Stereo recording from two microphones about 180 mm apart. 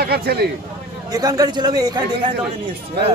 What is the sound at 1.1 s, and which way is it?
A man's voice, 20° right (ahead or behind).